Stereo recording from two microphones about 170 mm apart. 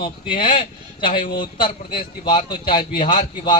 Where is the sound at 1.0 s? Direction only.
55° left (ahead or behind).